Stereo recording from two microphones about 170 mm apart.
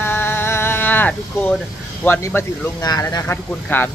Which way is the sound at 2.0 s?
15° left (ahead or behind).